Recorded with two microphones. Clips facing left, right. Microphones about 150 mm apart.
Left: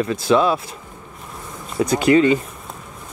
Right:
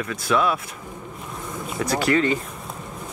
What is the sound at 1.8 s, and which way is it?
Speech, 20° left (ahead or behind).